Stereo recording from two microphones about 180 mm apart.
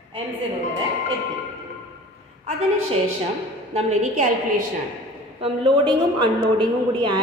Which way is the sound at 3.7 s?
40° right (ahead or behind).